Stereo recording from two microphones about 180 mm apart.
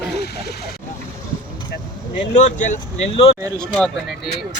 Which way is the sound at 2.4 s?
45° left (ahead or behind).